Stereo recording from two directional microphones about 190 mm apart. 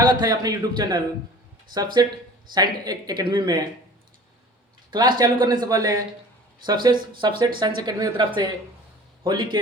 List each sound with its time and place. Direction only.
0.0 s speech: 20° right (ahead or behind)
4.9 s speech: 25° right (ahead or behind)
7.1 s speech: 25° right (ahead or behind)